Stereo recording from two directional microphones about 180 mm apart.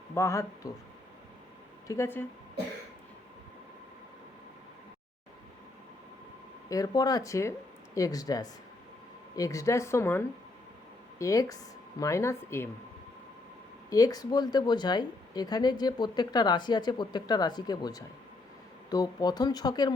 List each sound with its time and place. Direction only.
0.1 s speech: 15° left (ahead or behind)
1.9 s speech: 15° left (ahead or behind)
6.7 s speech: 20° left (ahead or behind)
13.9 s speech: 20° left (ahead or behind)